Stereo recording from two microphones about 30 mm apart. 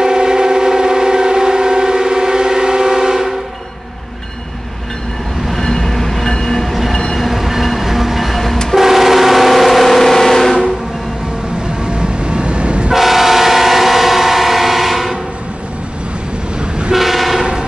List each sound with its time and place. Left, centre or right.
0.0 s civil defense siren: right
5.5 s train: centre
7.2 s train: centre
8.7 s vehicle: centre
11.8 s vehicle: right
12.9 s train: centre
16.9 s train: centre